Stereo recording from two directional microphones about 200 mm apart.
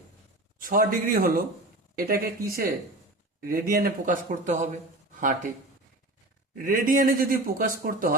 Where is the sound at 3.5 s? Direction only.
45° right (ahead or behind).